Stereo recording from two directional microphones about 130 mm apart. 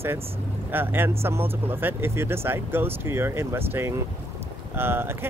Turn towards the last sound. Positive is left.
turn(degrees=-15)  # may be behind; listen again after turning